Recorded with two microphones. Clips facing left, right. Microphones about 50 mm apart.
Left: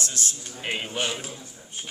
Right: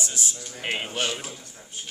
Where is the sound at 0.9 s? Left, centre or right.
Centre.